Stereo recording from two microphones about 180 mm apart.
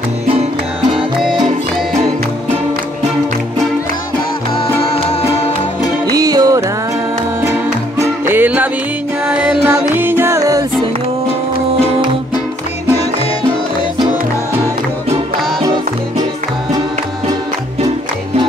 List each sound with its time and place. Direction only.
6.1 s music: 20° right (ahead or behind)
8.0 s music: 10° right (ahead or behind)